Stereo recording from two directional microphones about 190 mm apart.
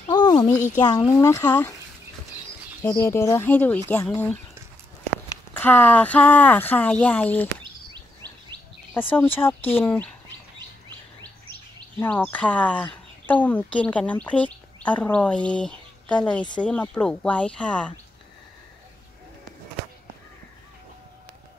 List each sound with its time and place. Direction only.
0.1 s a sound: 20° left (ahead or behind)
0.8 s speech: 20° left (ahead or behind)
2.8 s speech: 15° left (ahead or behind)
5.5 s speech: 10° left (ahead or behind)
7.6 s bird vocalization: 25° right (ahead or behind)
8.9 s speech: 10° left (ahead or behind)
12.0 s speech: 10° left (ahead or behind)